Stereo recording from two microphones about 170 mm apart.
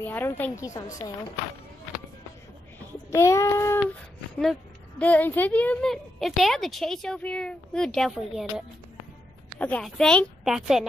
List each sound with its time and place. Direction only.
0.0 s a woman's voice: 10° left (ahead or behind)
3.1 s a woman's voice: 20° left (ahead or behind)
4.4 s speech: 5° left (ahead or behind)